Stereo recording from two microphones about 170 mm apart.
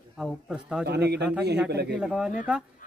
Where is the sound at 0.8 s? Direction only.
75° right (ahead or behind).